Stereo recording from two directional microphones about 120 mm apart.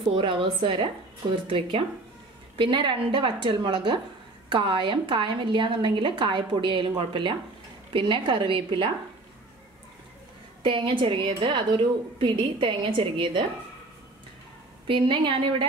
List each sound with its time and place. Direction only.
0.1 s a woman's voice: 45° right (ahead or behind)
10.6 s a woman's voice: 45° right (ahead or behind)
14.9 s a woman's voice: 45° right (ahead or behind)